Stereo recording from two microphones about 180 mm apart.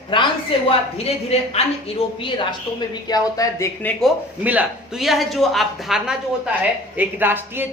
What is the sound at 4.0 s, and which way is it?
Speech, 10° right (ahead or behind).